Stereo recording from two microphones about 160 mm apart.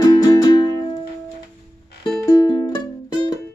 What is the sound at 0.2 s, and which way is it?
Music, 20° left (ahead or behind).